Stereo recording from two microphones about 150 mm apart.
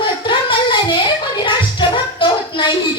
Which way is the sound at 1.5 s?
30° left (ahead or behind).